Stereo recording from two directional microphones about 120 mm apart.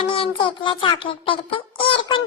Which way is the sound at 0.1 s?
50° left (ahead or behind).